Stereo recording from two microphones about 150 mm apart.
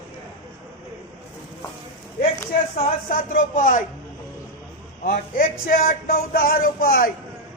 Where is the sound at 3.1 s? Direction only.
60° left (ahead or behind).